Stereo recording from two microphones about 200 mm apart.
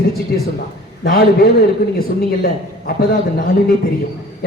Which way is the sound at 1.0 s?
50° left (ahead or behind).